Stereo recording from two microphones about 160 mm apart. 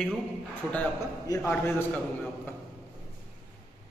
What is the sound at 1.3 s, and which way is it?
Speech, 25° left (ahead or behind).